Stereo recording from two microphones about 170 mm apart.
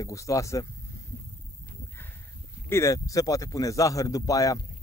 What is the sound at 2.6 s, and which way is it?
Speech, 15° left (ahead or behind).